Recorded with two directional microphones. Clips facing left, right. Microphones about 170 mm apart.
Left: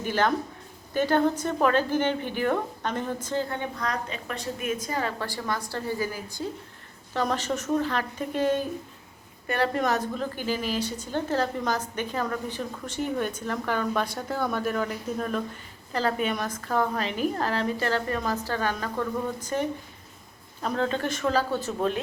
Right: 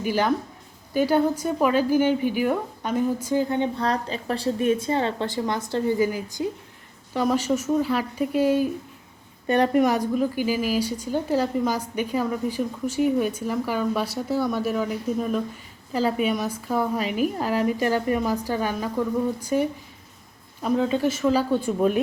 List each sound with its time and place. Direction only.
0.0 s speech: 10° right (ahead or behind)
3.8 s a woman's voice: 30° right (ahead or behind); by 22.0 s 10° right (ahead or behind)